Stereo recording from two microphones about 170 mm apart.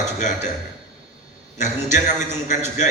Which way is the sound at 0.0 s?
45° left (ahead or behind).